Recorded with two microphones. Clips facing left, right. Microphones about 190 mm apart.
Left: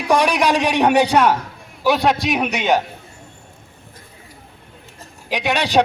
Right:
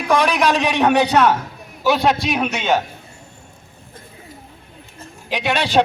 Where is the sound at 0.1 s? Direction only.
10° left (ahead or behind).